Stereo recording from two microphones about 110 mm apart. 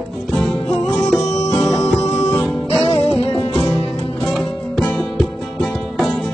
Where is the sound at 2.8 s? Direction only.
55° left (ahead or behind).